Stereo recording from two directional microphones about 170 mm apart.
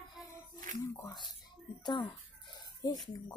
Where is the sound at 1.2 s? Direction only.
25° left (ahead or behind).